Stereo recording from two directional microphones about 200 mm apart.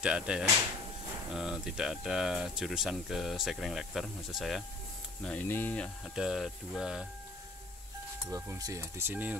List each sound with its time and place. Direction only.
0.0 s speech: 5° right (ahead or behind)
6.1 s speech: centre (ahead or behind)
8.3 s speech: 15° right (ahead or behind)